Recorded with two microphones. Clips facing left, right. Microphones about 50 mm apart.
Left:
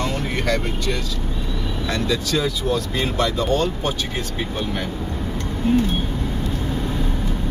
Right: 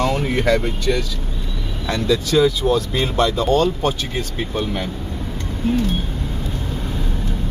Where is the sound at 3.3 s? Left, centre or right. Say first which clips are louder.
Right 4 dB; right.